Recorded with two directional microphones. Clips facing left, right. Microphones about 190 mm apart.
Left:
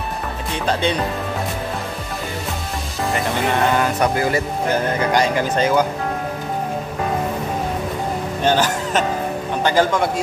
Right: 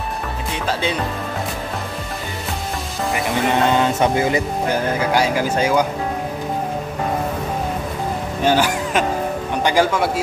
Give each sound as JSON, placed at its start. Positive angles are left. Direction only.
{"t": 0.7, "sound": "speech", "side_deg": -5}
{"t": 3.7, "sound": "speech", "side_deg": -25}
{"t": 5.0, "sound": "speech", "side_deg": -5}
{"t": 8.5, "sound": "speech", "side_deg": -10}